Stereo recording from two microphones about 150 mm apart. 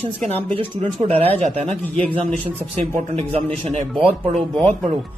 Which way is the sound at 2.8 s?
45° right (ahead or behind).